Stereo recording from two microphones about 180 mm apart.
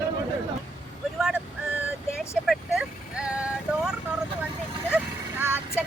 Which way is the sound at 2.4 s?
Centre (ahead or behind).